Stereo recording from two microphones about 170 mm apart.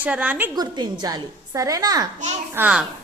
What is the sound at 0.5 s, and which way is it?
A woman's voice, 25° right (ahead or behind).